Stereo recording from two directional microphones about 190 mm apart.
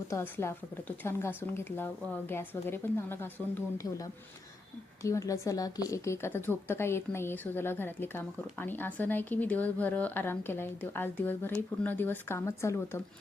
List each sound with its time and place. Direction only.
0.1 s a woman's voice: 15° left (ahead or behind)